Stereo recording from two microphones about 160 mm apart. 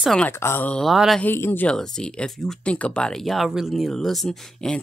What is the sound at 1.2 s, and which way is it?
Speech, 15° left (ahead or behind).